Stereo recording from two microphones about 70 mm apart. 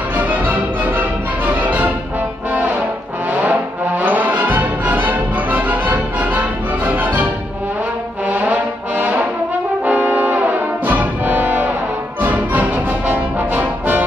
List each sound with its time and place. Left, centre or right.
0.1 s music: right
2.5 s brass instrument: right
3.3 s music: right
8.3 s brass instrument: right